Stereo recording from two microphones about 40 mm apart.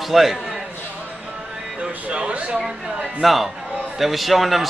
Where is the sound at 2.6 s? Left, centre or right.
Centre.